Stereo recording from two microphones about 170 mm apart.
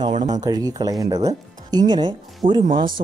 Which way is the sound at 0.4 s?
20° right (ahead or behind).